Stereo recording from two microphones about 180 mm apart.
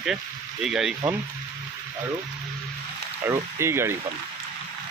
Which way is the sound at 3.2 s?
15° right (ahead or behind).